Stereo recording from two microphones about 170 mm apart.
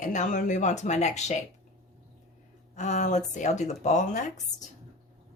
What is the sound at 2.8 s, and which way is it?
Speech, 45° left (ahead or behind).